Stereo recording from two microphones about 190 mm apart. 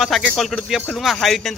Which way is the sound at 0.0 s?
Centre (ahead or behind).